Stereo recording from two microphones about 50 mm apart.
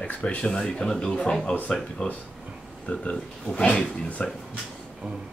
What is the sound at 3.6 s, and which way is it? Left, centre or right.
Speech, centre.